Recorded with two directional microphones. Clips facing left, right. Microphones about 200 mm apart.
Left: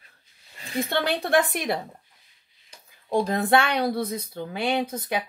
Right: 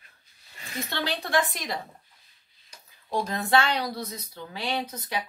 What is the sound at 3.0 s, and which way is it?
A woman's voice, 55° left (ahead or behind).